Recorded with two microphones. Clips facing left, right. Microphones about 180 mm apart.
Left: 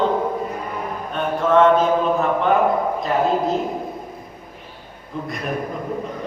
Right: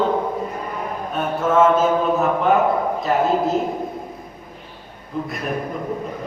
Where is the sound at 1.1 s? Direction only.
5° right (ahead or behind).